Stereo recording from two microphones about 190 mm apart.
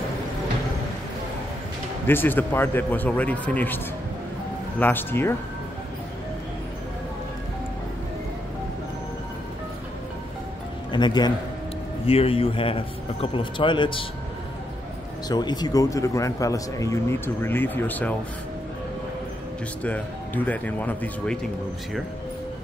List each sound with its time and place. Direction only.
2.0 s a man's voice: 10° left (ahead or behind)
10.9 s speech: 25° left (ahead or behind)
15.2 s a man's voice: 20° left (ahead or behind)
19.8 s a man's voice: 10° left (ahead or behind)